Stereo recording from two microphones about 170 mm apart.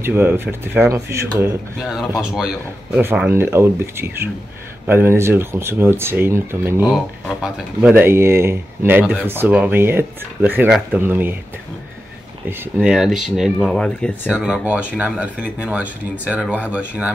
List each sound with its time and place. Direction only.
0.0 s speech: 10° right (ahead or behind)
1.8 s speech: centre (ahead or behind)
3.0 s speech: 15° right (ahead or behind)
12.7 s speech: 5° right (ahead or behind)